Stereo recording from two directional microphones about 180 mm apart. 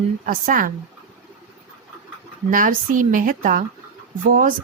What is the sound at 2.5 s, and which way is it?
A woman's voice, 50° right (ahead or behind).